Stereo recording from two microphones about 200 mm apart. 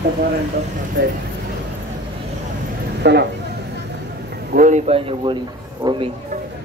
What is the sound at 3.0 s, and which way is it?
Speech, 55° right (ahead or behind).